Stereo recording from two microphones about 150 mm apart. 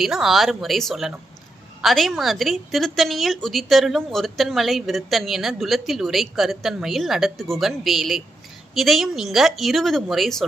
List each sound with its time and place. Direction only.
0.0 s a woman's voice: centre (ahead or behind)